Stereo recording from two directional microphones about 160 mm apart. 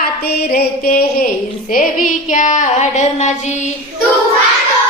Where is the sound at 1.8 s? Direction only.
55° left (ahead or behind).